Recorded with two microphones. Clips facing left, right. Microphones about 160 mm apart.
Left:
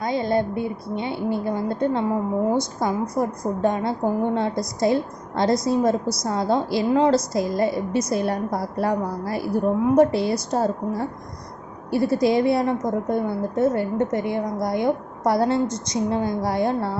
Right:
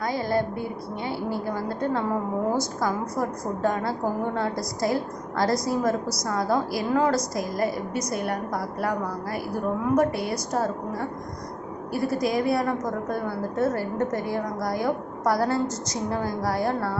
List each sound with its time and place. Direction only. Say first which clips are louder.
0.0 s a woman's voice: left 3 dB; 20° left (ahead or behind)